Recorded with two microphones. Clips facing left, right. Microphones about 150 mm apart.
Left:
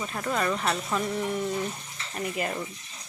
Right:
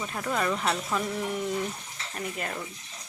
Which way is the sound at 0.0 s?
Centre (ahead or behind).